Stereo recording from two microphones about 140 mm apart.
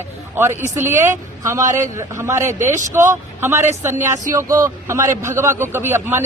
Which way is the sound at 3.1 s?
20° right (ahead or behind).